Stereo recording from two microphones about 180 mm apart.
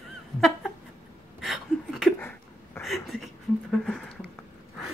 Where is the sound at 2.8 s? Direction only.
Centre (ahead or behind).